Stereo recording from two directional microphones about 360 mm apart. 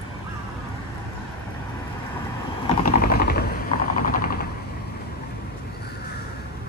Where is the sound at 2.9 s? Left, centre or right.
Left.